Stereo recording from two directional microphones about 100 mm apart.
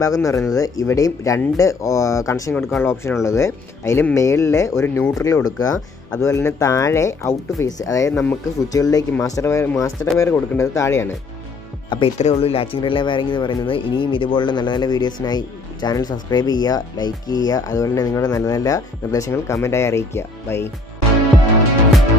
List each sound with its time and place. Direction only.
0.0 s speech: 35° left (ahead or behind)
11.9 s speech: 60° left (ahead or behind); by 20.7 s 25° left (ahead or behind)